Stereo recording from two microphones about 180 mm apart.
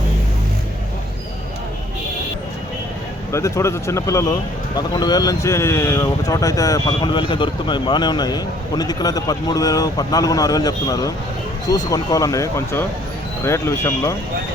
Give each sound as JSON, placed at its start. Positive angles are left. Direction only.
{"t": 3.3, "sound": "speech", "side_deg": 15}